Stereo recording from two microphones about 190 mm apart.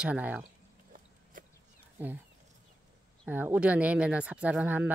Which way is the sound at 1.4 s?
45° right (ahead or behind).